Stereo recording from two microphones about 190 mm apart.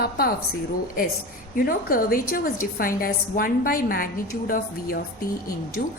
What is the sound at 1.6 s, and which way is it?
A woman's voice, 50° left (ahead or behind).